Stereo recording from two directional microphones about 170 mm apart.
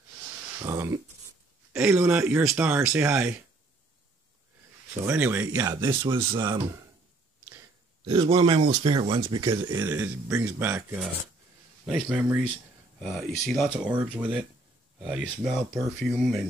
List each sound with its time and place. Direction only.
0.6 s speech: 20° right (ahead or behind)
5.0 s speech: 10° right (ahead or behind)
8.1 s speech: 25° right (ahead or behind)
9.7 s speech: 15° right (ahead or behind); by 16.4 s centre (ahead or behind)